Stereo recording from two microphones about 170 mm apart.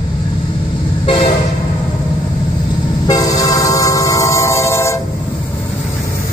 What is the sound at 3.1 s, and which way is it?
Train, 20° left (ahead or behind).